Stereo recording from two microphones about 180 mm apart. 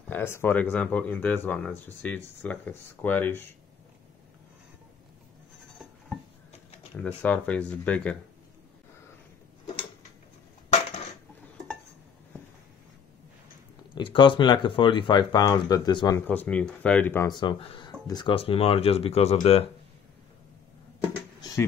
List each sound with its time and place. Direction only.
0.1 s speech: 10° left (ahead or behind)
7.2 s speech: 5° left (ahead or behind)
13.9 s speech: 25° left (ahead or behind)
16.3 s speech: 5° left (ahead or behind)
17.3 s speech: 25° left (ahead or behind)